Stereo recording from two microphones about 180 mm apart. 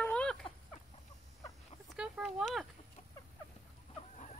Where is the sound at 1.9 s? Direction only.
5° right (ahead or behind).